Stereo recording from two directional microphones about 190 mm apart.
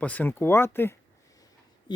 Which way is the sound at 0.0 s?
10° left (ahead or behind).